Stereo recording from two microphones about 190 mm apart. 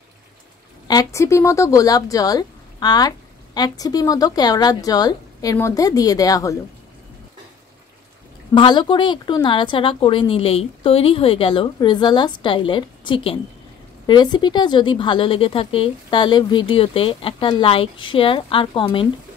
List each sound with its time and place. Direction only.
0.8 s speech: 15° left (ahead or behind)
8.5 s speech: 25° left (ahead or behind)